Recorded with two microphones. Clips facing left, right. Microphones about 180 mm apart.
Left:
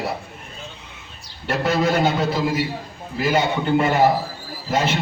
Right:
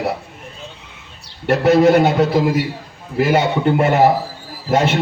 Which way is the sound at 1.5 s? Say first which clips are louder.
Right 8 dB; 65° right (ahead or behind).